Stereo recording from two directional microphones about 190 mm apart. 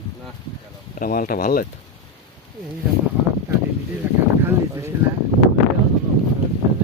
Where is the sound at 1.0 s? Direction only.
50° left (ahead or behind).